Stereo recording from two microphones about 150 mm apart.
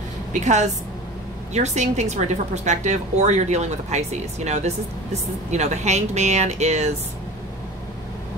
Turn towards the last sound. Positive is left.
turn(degrees=-50)  # may be behind; listen again after turning